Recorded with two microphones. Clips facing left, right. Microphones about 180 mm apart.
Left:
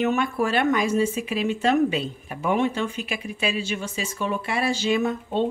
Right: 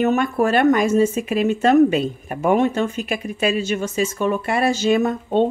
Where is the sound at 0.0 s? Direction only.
45° right (ahead or behind).